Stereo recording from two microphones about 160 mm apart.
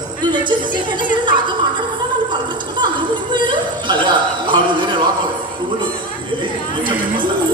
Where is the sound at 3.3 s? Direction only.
30° right (ahead or behind).